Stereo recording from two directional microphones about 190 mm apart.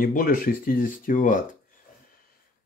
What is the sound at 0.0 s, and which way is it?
Speech, 50° left (ahead or behind).